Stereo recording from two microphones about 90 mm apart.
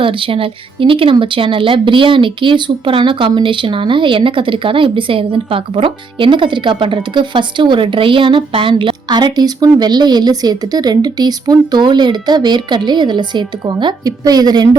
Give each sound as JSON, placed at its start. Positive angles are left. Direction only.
{"t": 0.0, "sound": "speech", "side_deg": -75}
{"t": 14.0, "sound": "a woman's voice", "side_deg": -45}